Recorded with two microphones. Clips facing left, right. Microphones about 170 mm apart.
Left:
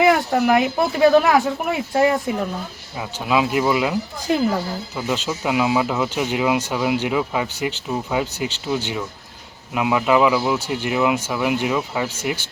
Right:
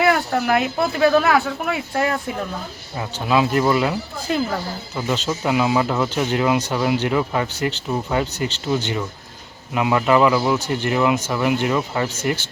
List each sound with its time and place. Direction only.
0.0 s speech: 10° left (ahead or behind)